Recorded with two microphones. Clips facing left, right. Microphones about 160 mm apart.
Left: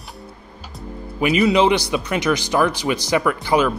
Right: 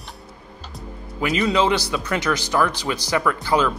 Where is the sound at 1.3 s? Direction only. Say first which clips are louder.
Left 4 dB; 15° left (ahead or behind).